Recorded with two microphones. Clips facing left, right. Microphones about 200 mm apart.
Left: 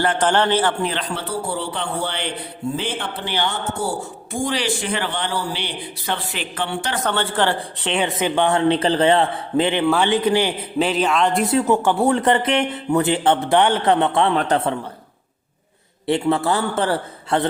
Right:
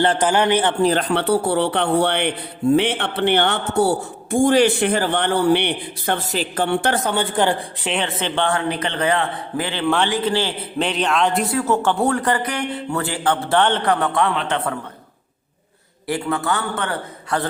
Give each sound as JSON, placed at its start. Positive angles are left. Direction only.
{"t": 0.2, "sound": "speech", "side_deg": -15}
{"t": 0.8, "sound": "speech", "side_deg": -40}
{"t": 1.1, "sound": "a man's voice", "side_deg": -65}
{"t": 6.3, "sound": "speech", "side_deg": -40}
{"t": 6.7, "sound": "a man's voice", "side_deg": -55}
{"t": 7.0, "sound": "speech", "side_deg": -10}
{"t": 8.0, "sound": "speech", "side_deg": 10}
{"t": 8.5, "sound": "a man's voice", "side_deg": 25}
{"t": 10.8, "sound": "a man's voice", "side_deg": 5}
{"t": 11.5, "sound": "a man's voice", "side_deg": 15}
{"t": 13.8, "sound": "a man's voice", "side_deg": 25}
{"t": 14.3, "sound": "a man's voice", "side_deg": 40}
{"t": 16.0, "sound": "a man's voice", "side_deg": 25}